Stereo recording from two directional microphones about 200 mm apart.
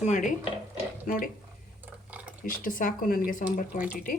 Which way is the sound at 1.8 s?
5° right (ahead or behind).